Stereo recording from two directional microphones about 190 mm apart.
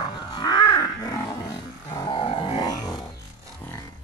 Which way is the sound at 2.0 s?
25° left (ahead or behind).